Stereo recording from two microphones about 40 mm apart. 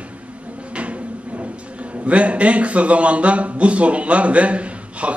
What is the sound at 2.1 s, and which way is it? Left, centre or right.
A man's voice, right.